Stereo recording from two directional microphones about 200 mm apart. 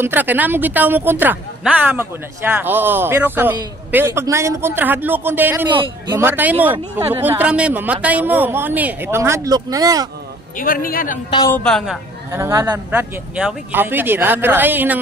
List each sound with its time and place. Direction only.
0.0 s speech: 10° right (ahead or behind)
5.7 s speech: 20° right (ahead or behind)
10.6 s a man's voice: 45° left (ahead or behind)
11.2 s speech: 20° left (ahead or behind)
11.5 s a woman's voice: 5° left (ahead or behind)
12.3 s speech: 15° right (ahead or behind)